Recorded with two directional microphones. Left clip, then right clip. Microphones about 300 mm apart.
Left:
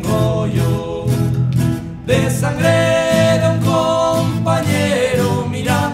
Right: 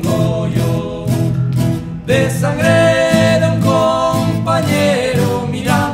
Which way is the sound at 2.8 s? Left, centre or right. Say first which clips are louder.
Right 4 dB; centre.